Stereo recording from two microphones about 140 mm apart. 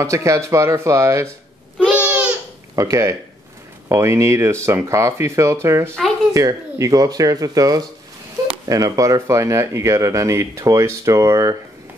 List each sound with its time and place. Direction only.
0.0 s speech: 20° right (ahead or behind)
1.8 s babbling: 10° right (ahead or behind)
2.7 s speech: 20° right (ahead or behind)